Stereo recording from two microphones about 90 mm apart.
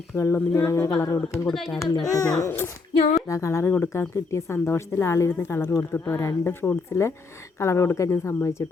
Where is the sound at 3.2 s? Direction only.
35° left (ahead or behind).